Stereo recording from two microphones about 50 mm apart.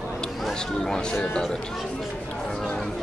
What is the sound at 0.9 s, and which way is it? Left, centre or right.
Speech, centre.